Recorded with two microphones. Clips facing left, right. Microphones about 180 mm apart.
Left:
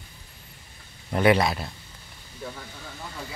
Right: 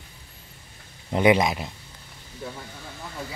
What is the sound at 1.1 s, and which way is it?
Speech, 15° right (ahead or behind).